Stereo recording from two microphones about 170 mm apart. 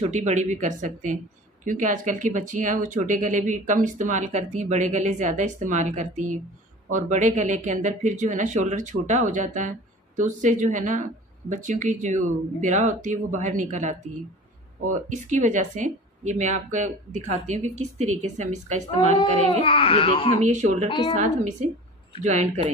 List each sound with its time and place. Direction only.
0.0 s speech: 45° right (ahead or behind)
15.1 s speech: 45° right (ahead or behind)
19.6 s speech: 30° left (ahead or behind)
20.4 s speech: 45° right (ahead or behind)
20.9 s a woman's voice: 30° left (ahead or behind)
21.2 s speech: 45° right (ahead or behind)